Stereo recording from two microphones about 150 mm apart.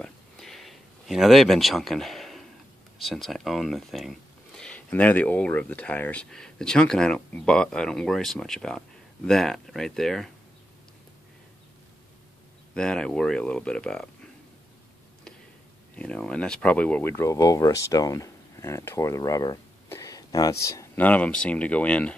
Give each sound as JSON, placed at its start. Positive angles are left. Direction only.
{"t": 0.0, "sound": "a sound", "side_deg": 0}
{"t": 3.0, "sound": "speech", "side_deg": 0}
{"t": 12.7, "sound": "speech", "side_deg": 5}
{"t": 16.0, "sound": "speech", "side_deg": 5}